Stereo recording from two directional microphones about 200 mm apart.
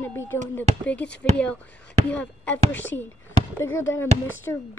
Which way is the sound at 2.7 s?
70° left (ahead or behind).